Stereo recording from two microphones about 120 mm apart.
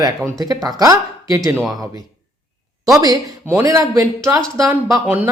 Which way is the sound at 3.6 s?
30° right (ahead or behind).